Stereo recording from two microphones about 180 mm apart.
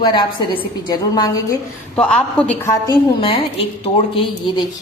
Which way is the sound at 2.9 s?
30° left (ahead or behind).